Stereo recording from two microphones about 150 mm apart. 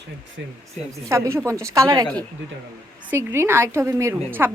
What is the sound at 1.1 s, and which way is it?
A woman's voice, 20° right (ahead or behind).